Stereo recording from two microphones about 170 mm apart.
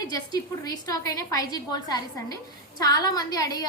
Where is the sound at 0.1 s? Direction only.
20° left (ahead or behind).